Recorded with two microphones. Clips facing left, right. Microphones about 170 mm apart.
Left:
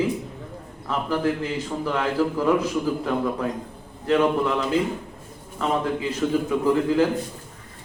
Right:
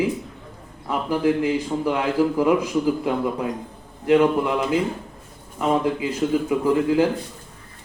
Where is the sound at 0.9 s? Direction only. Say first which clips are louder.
Right 3 dB; 15° right (ahead or behind).